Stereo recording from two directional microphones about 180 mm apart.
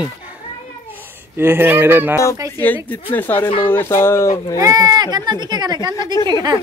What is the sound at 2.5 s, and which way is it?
Speech, 10° left (ahead or behind).